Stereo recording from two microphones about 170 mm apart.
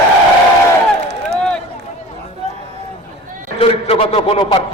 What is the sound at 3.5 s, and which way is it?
A man's voice, 35° left (ahead or behind).